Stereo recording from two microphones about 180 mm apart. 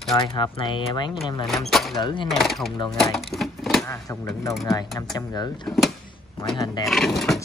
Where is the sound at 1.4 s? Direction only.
Centre (ahead or behind).